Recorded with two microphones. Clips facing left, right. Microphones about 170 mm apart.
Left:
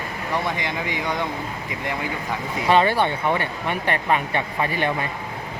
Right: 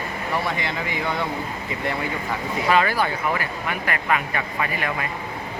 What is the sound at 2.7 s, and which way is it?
Speech, 30° left (ahead or behind).